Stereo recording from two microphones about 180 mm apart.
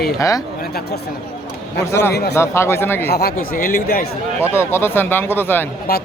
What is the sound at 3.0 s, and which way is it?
Speech, 60° left (ahead or behind).